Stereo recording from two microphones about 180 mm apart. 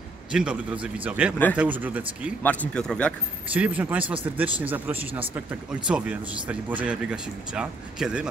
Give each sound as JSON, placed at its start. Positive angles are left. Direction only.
{"t": 0.3, "sound": "speech", "side_deg": -5}
{"t": 2.4, "sound": "speech", "side_deg": 5}
{"t": 3.5, "sound": "speech", "side_deg": -10}
{"t": 4.0, "sound": "speech", "side_deg": -30}
{"t": 4.4, "sound": "speech", "side_deg": -10}